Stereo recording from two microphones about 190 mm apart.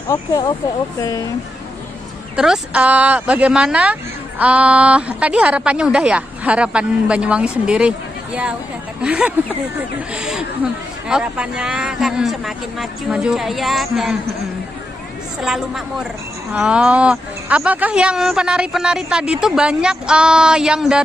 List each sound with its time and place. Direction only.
0.1 s speech: 20° left (ahead or behind)
2.3 s a woman's voice: 5° right (ahead or behind)
9.0 s a woman's voice: 10° right (ahead or behind)
15.4 s a woman's voice: centre (ahead or behind)